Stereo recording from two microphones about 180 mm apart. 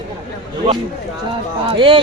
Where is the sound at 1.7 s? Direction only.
30° right (ahead or behind).